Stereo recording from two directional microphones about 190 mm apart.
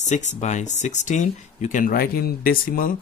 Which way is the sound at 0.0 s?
40° left (ahead or behind).